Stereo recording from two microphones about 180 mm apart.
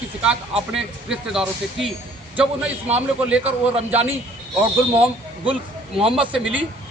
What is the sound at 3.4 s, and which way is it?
Speech, 35° right (ahead or behind).